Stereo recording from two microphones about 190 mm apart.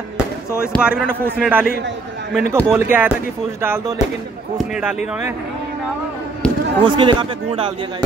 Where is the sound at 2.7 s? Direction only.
10° right (ahead or behind).